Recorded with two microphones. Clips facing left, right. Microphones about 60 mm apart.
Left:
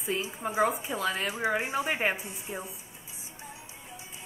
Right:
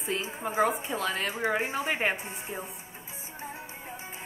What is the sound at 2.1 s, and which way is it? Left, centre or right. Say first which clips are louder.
Speech: right 2 dB; right.